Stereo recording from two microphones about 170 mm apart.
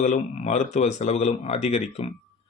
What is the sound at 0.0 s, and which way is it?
Speech, 45° left (ahead or behind).